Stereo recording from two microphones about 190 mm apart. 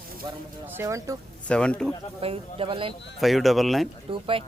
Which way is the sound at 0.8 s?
15° right (ahead or behind).